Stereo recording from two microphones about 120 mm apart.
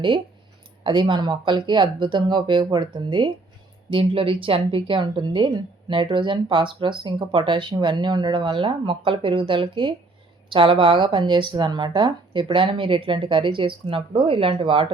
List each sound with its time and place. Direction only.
0.9 s speech: 40° right (ahead or behind)